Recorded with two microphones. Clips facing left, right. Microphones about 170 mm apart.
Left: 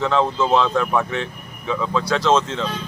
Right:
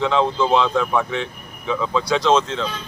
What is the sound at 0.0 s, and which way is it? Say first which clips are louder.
Speech: even; 15° right (ahead or behind).